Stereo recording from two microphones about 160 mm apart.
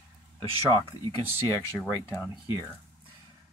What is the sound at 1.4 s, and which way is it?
Speech, 20° left (ahead or behind).